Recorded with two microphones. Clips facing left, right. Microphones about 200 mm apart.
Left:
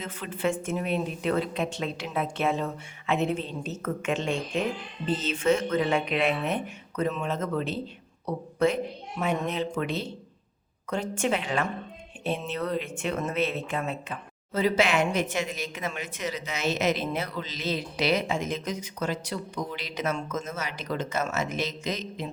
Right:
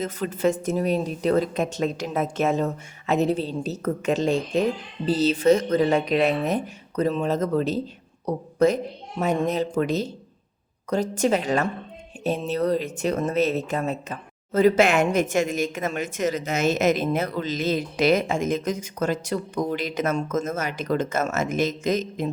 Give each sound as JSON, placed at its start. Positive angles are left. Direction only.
{"t": 0.0, "sound": "a woman's voice", "side_deg": -40}